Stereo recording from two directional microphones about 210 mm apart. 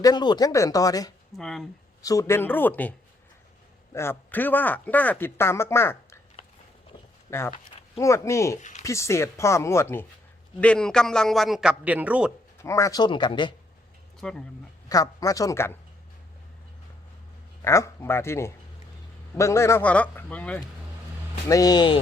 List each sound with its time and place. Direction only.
0.0 s speech: 20° left (ahead or behind)
1.4 s a man's voice: centre (ahead or behind)
2.0 s speech: 15° left (ahead or behind)
3.9 s speech: 10° left (ahead or behind)
7.3 s a man's voice: 15° left (ahead or behind); by 12.3 s 5° right (ahead or behind)
12.6 s speech: 15° left (ahead or behind)
14.2 s speech: 5° left (ahead or behind)
14.8 s speech: 15° left (ahead or behind)
17.6 s speech: 15° left (ahead or behind)